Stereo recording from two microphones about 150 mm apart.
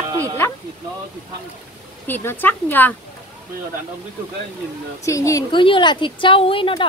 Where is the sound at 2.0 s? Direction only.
15° left (ahead or behind).